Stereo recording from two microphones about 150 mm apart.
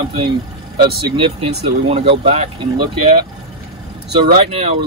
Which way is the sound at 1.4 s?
40° right (ahead or behind).